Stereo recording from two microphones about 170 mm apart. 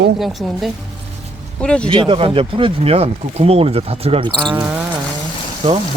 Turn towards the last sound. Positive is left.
turn(degrees=-35)  # may be behind; listen again after turning